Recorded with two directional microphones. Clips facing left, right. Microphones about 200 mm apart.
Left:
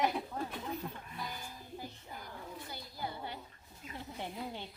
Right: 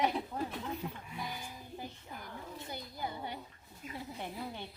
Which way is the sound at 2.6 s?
20° right (ahead or behind).